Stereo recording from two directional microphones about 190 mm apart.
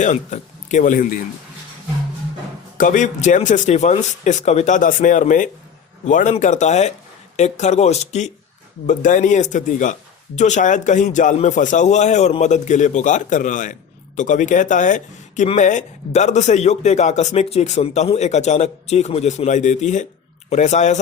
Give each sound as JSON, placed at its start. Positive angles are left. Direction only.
{"t": 0.0, "sound": "speech", "side_deg": 40}
{"t": 2.7, "sound": "speech", "side_deg": 40}